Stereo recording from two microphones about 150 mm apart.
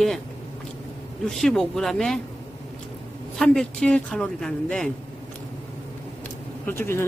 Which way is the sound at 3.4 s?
5° left (ahead or behind).